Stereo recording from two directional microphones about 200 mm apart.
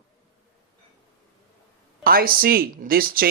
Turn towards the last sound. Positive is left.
turn(degrees=-45)  # may be behind; listen again after turning